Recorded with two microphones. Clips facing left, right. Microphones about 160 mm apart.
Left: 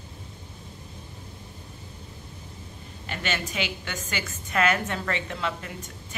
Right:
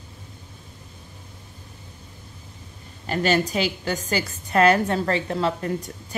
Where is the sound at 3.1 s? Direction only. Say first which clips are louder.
Right 10 dB; 40° right (ahead or behind).